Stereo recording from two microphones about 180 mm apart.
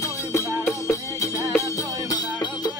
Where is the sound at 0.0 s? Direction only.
15° left (ahead or behind).